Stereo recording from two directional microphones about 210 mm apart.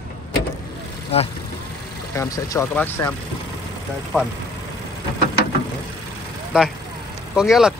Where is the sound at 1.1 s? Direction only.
30° left (ahead or behind).